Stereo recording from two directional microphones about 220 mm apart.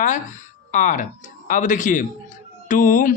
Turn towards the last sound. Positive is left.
turn(degrees=35)  # may be behind; listen again after turning